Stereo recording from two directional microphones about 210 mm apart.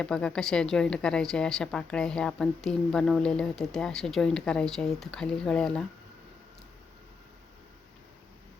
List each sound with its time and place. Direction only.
0.0 s speech: 5° left (ahead or behind)